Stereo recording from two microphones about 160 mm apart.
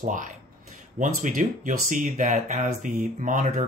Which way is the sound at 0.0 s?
55° right (ahead or behind).